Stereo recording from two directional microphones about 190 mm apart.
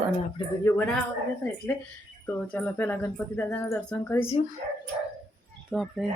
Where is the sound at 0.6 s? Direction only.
10° left (ahead or behind).